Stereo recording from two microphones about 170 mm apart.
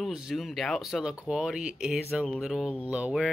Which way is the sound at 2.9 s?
5° right (ahead or behind).